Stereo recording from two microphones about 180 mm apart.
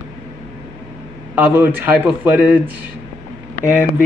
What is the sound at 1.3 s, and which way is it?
A man's voice, 10° right (ahead or behind).